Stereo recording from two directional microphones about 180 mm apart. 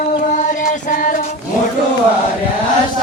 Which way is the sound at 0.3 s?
45° left (ahead or behind).